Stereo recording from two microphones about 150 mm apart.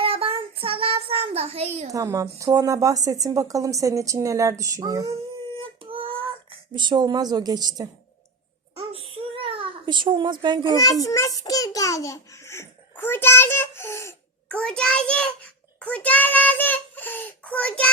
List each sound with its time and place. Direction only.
0.0 s child singing: 40° right (ahead or behind)
1.9 s a woman's voice: 20° right (ahead or behind)
5.8 s child singing: 35° right (ahead or behind)
6.7 s a woman's voice: 30° right (ahead or behind)
8.7 s a sound: 40° right (ahead or behind)
11.0 s a sound: 20° left (ahead or behind)
14.6 s child singing: 5° left (ahead or behind)